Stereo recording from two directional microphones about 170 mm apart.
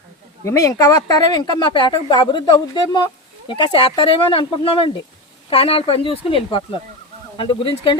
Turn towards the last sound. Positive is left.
turn(degrees=30)  # may be behind; listen again after turning